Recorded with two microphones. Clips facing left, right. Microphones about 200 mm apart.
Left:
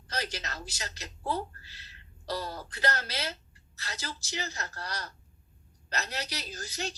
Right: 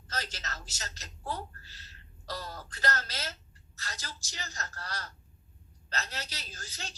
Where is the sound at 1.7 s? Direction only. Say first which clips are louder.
Even; 40° right (ahead or behind).